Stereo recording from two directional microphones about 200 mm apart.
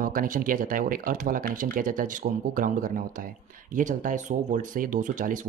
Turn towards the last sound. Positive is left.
turn(degrees=-40)  # may be behind; listen again after turning